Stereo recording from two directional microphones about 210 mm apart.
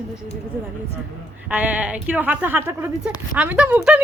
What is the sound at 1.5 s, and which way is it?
Speech, 5° right (ahead or behind).